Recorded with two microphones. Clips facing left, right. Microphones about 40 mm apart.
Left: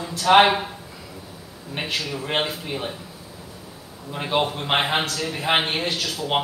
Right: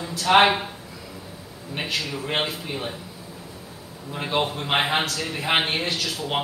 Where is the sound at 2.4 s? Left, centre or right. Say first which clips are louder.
Left 2 dB; centre.